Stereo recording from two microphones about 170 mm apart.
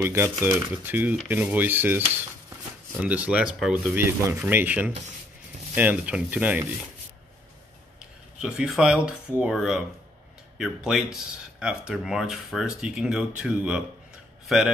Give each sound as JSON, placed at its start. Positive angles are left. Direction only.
{"t": 0.0, "sound": "speech", "side_deg": -15}
{"t": 8.4, "sound": "speech", "side_deg": -5}